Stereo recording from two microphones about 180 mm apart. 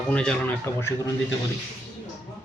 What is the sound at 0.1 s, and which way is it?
Speech, 5° left (ahead or behind).